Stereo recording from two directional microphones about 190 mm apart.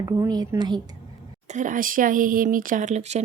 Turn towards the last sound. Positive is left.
turn(degrees=-35)  # may be behind; listen again after turning